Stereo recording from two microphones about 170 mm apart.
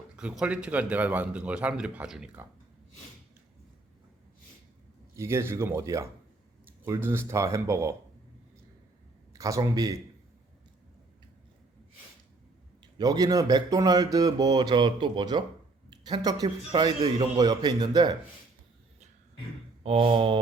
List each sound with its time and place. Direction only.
0.2 s a man's voice: 5° right (ahead or behind)
5.1 s a man's voice: 15° right (ahead or behind)
9.3 s speech: 20° right (ahead or behind)
12.8 s speech: 20° right (ahead or behind)
19.8 s mantra: 35° right (ahead or behind)